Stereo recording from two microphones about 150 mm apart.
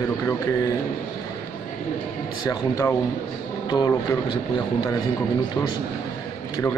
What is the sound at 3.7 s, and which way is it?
Speech, 25° left (ahead or behind).